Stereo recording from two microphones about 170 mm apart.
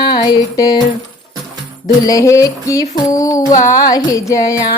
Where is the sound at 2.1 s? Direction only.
20° left (ahead or behind).